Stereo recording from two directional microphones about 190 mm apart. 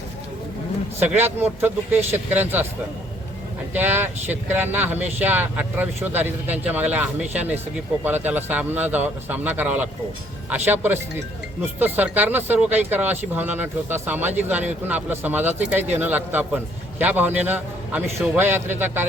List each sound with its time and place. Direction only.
1.1 s speech: 10° right (ahead or behind)
3.8 s speech: 10° right (ahead or behind)